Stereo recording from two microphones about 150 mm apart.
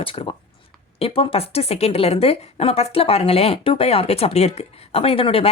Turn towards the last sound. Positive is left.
turn(degrees=40)  # may be behind; listen again after turning